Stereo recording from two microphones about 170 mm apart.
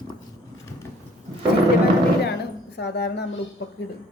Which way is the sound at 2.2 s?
80° left.